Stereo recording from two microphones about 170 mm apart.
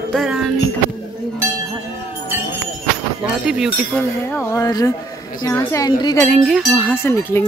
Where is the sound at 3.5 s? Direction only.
Centre (ahead or behind).